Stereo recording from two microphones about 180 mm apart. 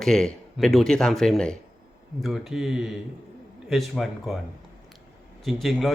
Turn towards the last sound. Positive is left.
turn(degrees=0)  # may be behind; listen again after turning